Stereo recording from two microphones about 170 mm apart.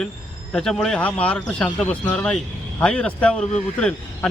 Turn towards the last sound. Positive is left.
turn(degrees=5)  # may be behind; listen again after turning